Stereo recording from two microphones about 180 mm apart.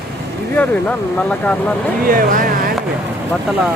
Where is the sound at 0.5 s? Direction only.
10° left (ahead or behind).